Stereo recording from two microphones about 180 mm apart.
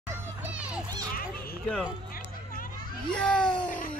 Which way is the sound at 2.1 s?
50° left (ahead or behind).